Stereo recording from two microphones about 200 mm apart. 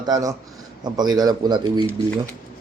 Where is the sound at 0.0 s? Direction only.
15° right (ahead or behind).